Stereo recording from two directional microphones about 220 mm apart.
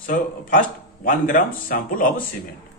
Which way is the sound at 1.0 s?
35° left (ahead or behind).